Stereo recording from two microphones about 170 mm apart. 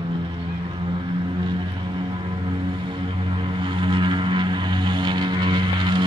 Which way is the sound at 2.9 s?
30° right (ahead or behind).